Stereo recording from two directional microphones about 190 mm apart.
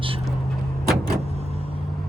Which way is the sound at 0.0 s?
30° right (ahead or behind).